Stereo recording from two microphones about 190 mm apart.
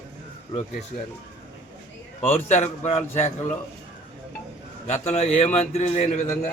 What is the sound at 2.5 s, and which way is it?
Speech, 35° left (ahead or behind).